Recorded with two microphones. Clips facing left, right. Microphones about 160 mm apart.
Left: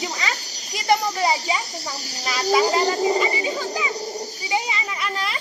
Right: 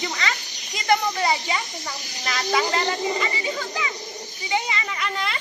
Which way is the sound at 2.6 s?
40° left (ahead or behind).